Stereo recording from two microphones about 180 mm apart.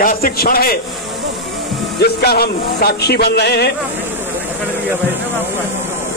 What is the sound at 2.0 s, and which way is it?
Speech, 60° left (ahead or behind).